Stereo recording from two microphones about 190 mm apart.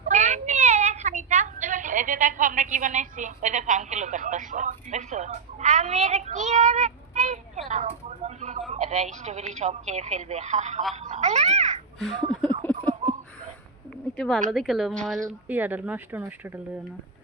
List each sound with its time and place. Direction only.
0.1 s a woman's voice: 40° right (ahead or behind)
11.9 s speech: centre (ahead or behind)
12.3 s a sound: 5° left (ahead or behind)
14.2 s a woman's voice: centre (ahead or behind)